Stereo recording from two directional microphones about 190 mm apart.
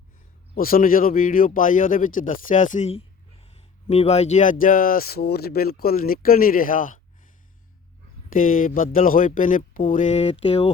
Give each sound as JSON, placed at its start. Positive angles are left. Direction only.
{"t": 0.5, "sound": "speech", "side_deg": 50}
{"t": 8.3, "sound": "speech", "side_deg": 45}